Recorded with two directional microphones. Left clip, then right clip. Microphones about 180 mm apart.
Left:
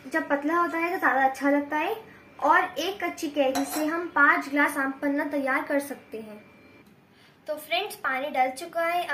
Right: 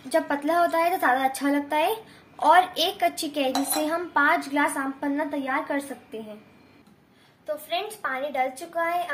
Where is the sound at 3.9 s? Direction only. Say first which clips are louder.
Left 1 dB; 45° right (ahead or behind).